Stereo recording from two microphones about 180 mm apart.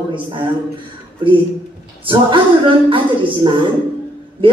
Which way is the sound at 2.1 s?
30° right (ahead or behind).